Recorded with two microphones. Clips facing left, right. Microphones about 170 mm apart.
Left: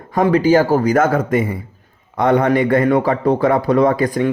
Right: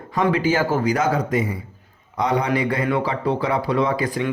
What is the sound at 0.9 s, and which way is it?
A man's voice, 50° left (ahead or behind).